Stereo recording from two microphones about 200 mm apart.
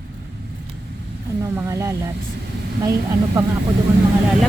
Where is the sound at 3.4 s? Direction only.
15° right (ahead or behind).